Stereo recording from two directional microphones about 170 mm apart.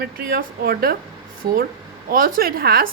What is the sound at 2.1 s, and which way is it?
Speech, 55° right (ahead or behind).